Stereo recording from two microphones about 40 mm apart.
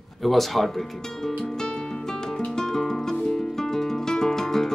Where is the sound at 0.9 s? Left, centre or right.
Centre.